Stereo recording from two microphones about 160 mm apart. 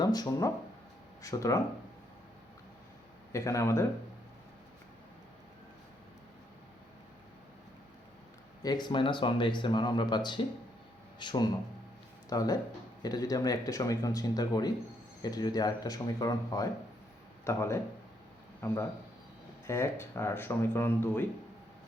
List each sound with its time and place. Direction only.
0.0 s speech: 25° left (ahead or behind)
3.3 s speech: 20° left (ahead or behind)
8.6 s speech: 25° left (ahead or behind)